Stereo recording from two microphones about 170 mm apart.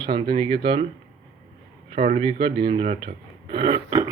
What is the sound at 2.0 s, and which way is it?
Speech, 45° right (ahead or behind).